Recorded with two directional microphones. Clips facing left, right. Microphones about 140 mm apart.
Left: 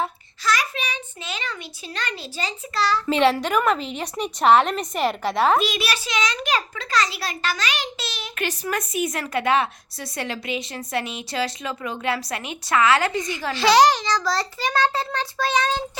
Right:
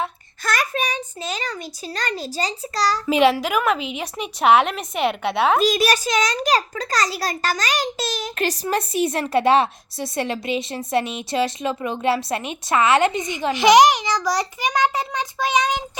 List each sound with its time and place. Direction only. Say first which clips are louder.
0.4 s a child's voice: right 1 dB; 50° right (ahead or behind)
3.1 s a woman's voice: right 3 dB; 10° right (ahead or behind)
5.6 s a child's voice: right 7 dB; 40° right (ahead or behind); by 15.8 s 15° right (ahead or behind)